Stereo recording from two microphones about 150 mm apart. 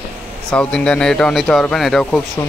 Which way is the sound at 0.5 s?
5° left (ahead or behind).